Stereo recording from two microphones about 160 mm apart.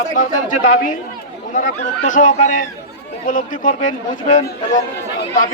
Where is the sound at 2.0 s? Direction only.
50° left (ahead or behind).